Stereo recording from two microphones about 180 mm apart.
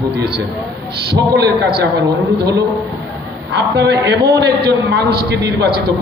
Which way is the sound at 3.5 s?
70° right (ahead or behind).